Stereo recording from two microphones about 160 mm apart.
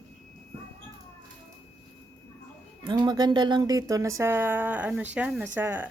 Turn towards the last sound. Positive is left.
turn(degrees=-10)  # may be behind; listen again after turning